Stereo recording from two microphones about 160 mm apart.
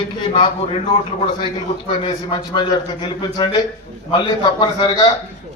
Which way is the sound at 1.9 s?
30° left (ahead or behind).